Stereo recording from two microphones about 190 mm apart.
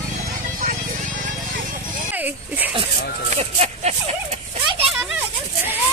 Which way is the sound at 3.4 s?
35° right (ahead or behind).